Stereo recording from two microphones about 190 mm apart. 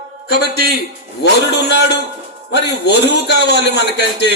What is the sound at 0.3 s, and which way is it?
A man's voice, 60° left (ahead or behind).